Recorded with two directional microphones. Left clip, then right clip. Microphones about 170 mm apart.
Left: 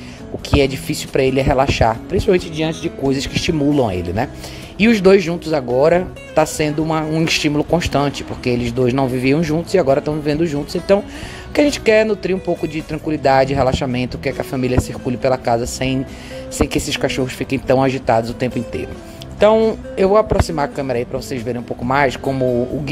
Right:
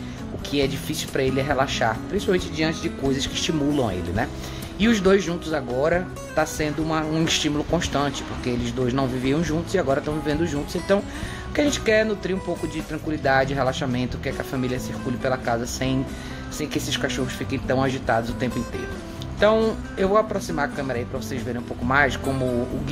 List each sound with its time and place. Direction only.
0.5 s speech: 35° left (ahead or behind)
5.8 s speech: 45° left (ahead or behind)